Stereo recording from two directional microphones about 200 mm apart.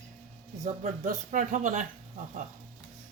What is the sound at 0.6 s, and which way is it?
Speech, 40° right (ahead or behind).